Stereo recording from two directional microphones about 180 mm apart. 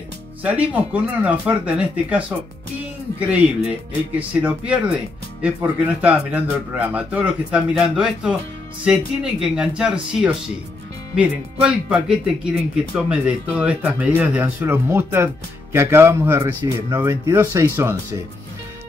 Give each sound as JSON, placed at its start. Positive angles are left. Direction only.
{"t": 0.4, "sound": "speech", "side_deg": -5}